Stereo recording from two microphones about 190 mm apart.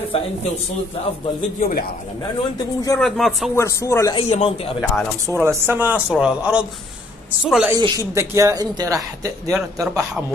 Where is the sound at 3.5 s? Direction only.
15° left (ahead or behind).